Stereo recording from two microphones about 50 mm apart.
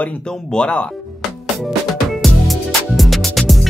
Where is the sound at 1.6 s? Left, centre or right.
Centre.